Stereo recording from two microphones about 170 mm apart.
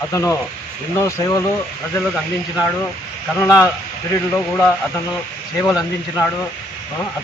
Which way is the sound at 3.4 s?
20° left (ahead or behind).